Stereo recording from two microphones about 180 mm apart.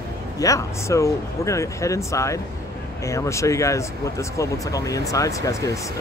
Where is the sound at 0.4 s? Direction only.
15° left (ahead or behind).